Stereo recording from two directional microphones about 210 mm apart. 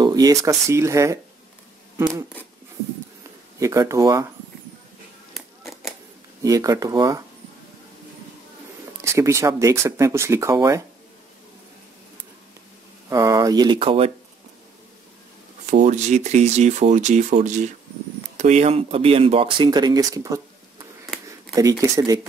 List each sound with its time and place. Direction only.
0.0 s speech: 20° right (ahead or behind)
2.0 s a sound: 15° right (ahead or behind)
3.5 s speech: 15° right (ahead or behind)
5.3 s a sound: centre (ahead or behind)
6.4 s speech: 15° right (ahead or behind)
9.0 s speech: 15° right (ahead or behind)
13.1 s speech: 15° right (ahead or behind)
15.7 s speech: 35° right (ahead or behind); by 20.4 s 15° right (ahead or behind)
21.5 s speech: 15° right (ahead or behind)